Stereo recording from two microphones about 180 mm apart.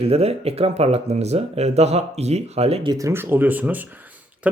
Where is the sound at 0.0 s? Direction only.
35° right (ahead or behind).